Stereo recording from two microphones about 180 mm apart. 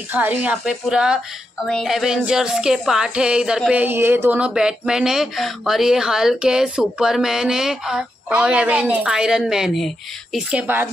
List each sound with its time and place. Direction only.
0.1 s music: 10° right (ahead or behind)
10.3 s speech: 10° right (ahead or behind)